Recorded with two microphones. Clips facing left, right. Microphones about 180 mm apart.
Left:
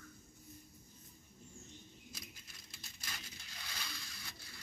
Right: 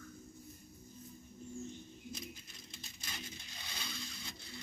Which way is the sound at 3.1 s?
20° right (ahead or behind).